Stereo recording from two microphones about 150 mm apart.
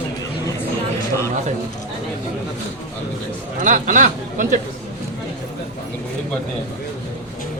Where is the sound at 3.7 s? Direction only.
55° right (ahead or behind).